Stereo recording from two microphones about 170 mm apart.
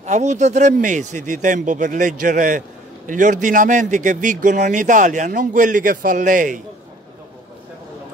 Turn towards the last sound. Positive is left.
turn(degrees=-50)  # may be behind; listen again after turning